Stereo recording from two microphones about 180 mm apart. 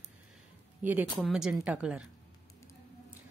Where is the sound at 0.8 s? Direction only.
10° right (ahead or behind).